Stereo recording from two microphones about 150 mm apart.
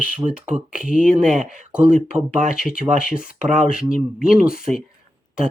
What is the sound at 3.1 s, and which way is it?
Speech, 5° right (ahead or behind).